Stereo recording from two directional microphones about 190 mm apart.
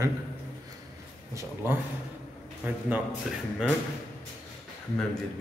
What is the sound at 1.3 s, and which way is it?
A man's voice, 15° right (ahead or behind).